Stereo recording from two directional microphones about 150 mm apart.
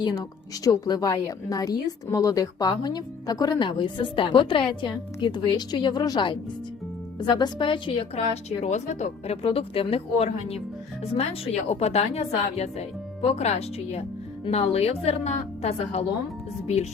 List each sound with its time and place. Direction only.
0.0 s a woman's voice: 25° left (ahead or behind); by 16.0 s 45° left (ahead or behind)